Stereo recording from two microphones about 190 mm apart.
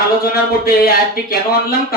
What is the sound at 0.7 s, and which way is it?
Speech, 50° left (ahead or behind).